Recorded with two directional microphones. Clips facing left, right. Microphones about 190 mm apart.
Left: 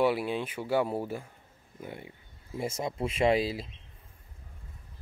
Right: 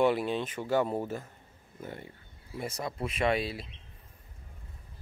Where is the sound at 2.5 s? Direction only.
25° left (ahead or behind).